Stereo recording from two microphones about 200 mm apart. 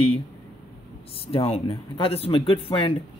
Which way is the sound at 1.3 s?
30° left (ahead or behind).